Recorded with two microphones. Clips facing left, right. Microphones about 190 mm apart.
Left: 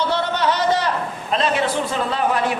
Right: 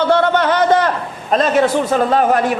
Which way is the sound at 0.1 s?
55° right (ahead or behind).